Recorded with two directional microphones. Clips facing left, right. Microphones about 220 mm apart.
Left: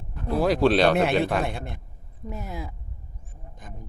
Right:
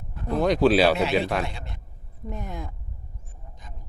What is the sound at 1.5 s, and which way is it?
Speech, 55° left (ahead or behind).